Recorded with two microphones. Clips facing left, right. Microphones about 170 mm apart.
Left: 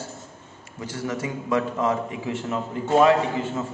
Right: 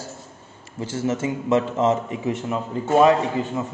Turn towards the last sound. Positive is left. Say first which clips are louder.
# right 2 dB
turn(degrees=-15)  # may be behind; listen again after turning